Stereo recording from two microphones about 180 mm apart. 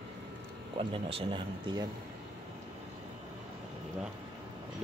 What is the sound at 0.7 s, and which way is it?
Speech, 30° right (ahead or behind).